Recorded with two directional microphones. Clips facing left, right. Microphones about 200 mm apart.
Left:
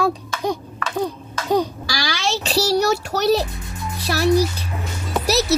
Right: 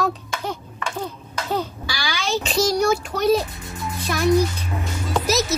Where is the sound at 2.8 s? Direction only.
75° left (ahead or behind).